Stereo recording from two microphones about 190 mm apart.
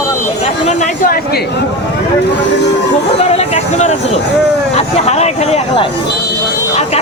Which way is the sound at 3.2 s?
35° left (ahead or behind).